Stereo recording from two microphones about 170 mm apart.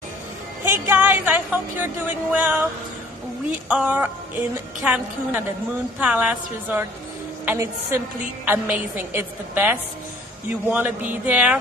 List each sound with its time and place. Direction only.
0.8 s a woman's voice: 10° right (ahead or behind)
3.6 s a woman's voice: 10° right (ahead or behind)